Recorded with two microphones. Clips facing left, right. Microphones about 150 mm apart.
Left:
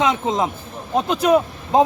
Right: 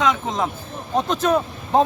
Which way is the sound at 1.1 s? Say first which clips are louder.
Left 5 dB; 10° left (ahead or behind).